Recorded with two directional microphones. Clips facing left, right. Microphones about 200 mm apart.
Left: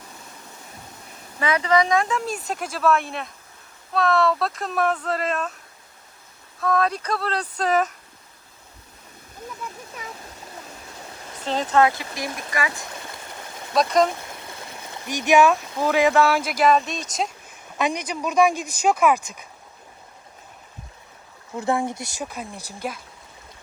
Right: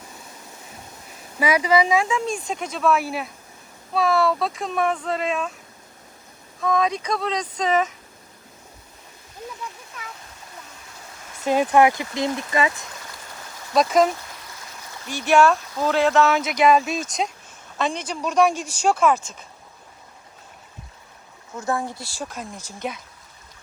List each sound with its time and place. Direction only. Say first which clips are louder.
1.4 s speech: right 1 dB; 10° right (ahead or behind)
6.6 s speech: even; centre (ahead or behind)
11.4 s speech: right 3 dB; 15° right (ahead or behind)
13.7 s speech: right 1 dB; centre (ahead or behind)
14.8 s a sound: left 1 dB; 15° left (ahead or behind)
15.4 s speech: even; 10° left (ahead or behind)
17.7 s speech: left 1 dB; 15° left (ahead or behind)
21.5 s speech: left 3 dB; 20° left (ahead or behind)
22.4 s speech: even; 5° left (ahead or behind)